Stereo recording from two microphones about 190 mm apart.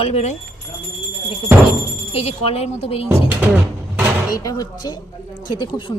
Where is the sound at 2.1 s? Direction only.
30° left (ahead or behind).